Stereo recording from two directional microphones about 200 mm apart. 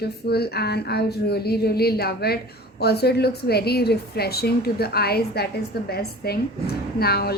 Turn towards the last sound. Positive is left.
turn(degrees=50)  # may be behind; listen again after turning